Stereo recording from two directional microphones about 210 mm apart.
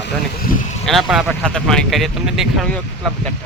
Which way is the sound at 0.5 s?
45° left (ahead or behind).